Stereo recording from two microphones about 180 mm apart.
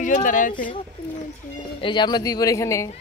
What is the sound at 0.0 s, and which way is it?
Speech, 45° left (ahead or behind).